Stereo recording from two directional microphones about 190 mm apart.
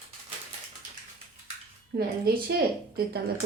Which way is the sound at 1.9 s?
55° right (ahead or behind).